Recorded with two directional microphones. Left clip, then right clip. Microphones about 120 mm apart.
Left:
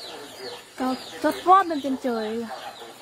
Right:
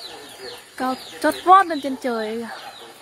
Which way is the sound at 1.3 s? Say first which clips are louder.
Right 4 dB; 20° right (ahead or behind).